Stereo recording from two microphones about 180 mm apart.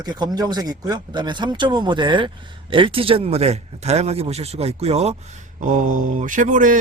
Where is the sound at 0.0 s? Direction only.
20° right (ahead or behind).